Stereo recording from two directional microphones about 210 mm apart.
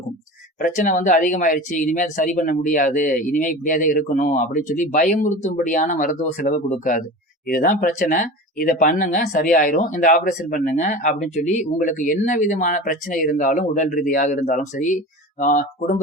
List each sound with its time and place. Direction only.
0.6 s speech: 40° left (ahead or behind)